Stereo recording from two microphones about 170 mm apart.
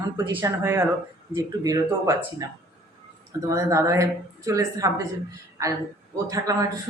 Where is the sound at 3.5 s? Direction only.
15° right (ahead or behind).